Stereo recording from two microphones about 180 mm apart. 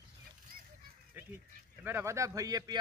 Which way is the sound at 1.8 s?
15° right (ahead or behind).